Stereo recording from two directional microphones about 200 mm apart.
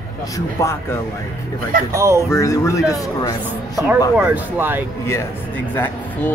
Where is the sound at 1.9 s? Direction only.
15° right (ahead or behind).